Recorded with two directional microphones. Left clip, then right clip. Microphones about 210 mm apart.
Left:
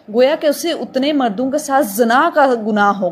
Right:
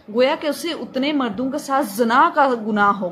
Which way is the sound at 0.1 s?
20° left (ahead or behind).